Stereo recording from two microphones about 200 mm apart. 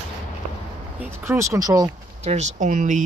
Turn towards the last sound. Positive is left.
turn(degrees=-40)  # may be behind; listen again after turning